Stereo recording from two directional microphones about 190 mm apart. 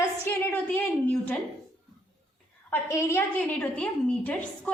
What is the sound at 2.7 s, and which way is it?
A woman's voice, 15° left (ahead or behind).